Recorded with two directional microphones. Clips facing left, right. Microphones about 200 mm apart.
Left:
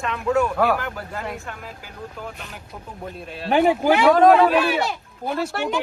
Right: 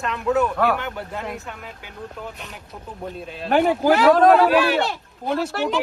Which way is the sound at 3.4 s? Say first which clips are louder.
Even; centre (ahead or behind).